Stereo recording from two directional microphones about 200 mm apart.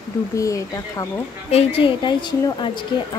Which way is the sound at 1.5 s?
30° left (ahead or behind).